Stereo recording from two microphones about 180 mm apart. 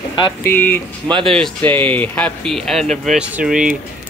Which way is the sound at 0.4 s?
10° left (ahead or behind).